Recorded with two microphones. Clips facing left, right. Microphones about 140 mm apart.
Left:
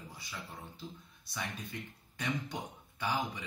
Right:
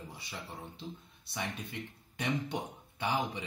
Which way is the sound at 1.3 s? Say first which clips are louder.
Right 2 dB; 25° right (ahead or behind).